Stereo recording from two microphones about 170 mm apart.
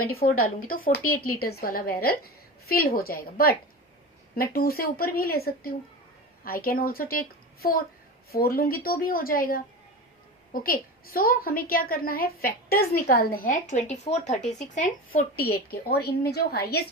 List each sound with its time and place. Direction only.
0.2 s a woman's voice: 60° left (ahead or behind)
15.4 s a woman's voice: 65° left (ahead or behind)